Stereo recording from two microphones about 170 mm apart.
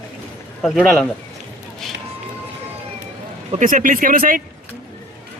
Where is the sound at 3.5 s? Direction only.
50° right (ahead or behind).